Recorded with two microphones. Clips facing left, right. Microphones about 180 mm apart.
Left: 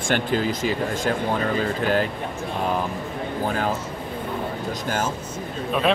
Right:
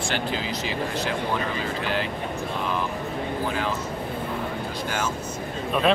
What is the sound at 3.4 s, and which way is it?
Speech, 45° left (ahead or behind).